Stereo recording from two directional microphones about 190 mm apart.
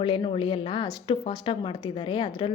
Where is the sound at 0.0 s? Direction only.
25° left (ahead or behind).